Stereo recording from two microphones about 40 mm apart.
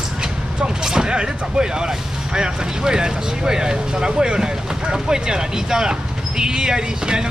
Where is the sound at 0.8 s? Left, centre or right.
Centre.